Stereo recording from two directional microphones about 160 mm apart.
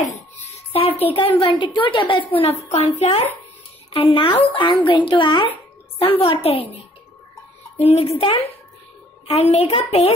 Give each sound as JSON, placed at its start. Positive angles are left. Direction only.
{"t": 0.4, "sound": "a sound", "side_deg": 40}
{"t": 1.1, "sound": "a woman's voice", "side_deg": 35}
{"t": 7.8, "sound": "a woman's voice", "side_deg": 40}